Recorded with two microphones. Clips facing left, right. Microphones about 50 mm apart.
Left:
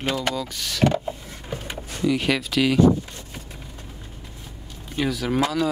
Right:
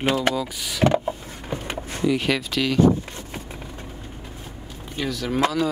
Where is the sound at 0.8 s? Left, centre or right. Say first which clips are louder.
Right 3 dB; right.